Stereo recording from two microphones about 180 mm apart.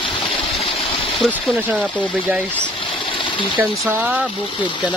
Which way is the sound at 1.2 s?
Centre (ahead or behind).